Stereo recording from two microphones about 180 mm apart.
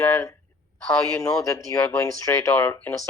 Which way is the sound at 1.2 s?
15° left (ahead or behind).